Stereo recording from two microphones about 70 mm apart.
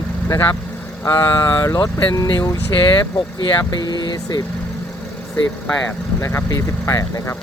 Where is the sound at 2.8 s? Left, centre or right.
Left.